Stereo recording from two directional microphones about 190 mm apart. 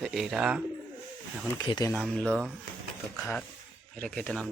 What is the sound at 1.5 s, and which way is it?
Speech, 20° left (ahead or behind).